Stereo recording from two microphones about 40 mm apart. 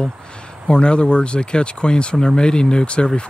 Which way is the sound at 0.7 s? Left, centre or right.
Left.